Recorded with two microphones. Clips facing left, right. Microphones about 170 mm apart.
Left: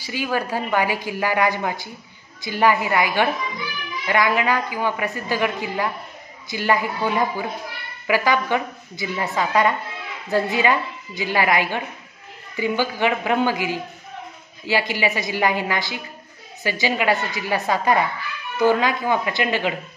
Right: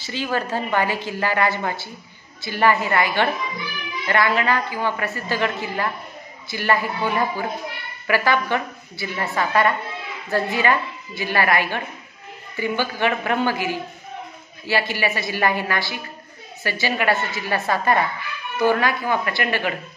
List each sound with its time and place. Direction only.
0.0 s a woman's voice: 10° left (ahead or behind)